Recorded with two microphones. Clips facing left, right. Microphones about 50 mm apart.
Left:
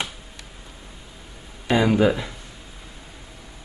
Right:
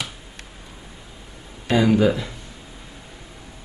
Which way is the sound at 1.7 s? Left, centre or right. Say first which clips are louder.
Right 1 dB; centre.